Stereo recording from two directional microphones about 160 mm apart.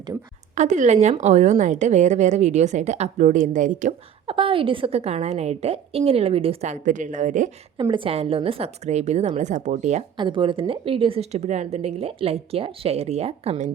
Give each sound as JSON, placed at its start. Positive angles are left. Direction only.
{"t": 0.5, "sound": "a woman's voice", "side_deg": -45}
{"t": 4.3, "sound": "a woman's voice", "side_deg": -35}
{"t": 7.8, "sound": "a woman's voice", "side_deg": -30}
{"t": 10.2, "sound": "a woman's voice", "side_deg": -30}